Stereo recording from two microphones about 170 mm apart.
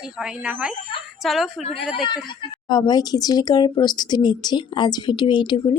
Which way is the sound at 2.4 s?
25° left (ahead or behind).